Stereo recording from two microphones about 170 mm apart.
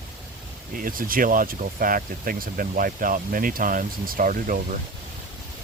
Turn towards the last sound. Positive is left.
turn(degrees=-55)  # may be behind; listen again after turning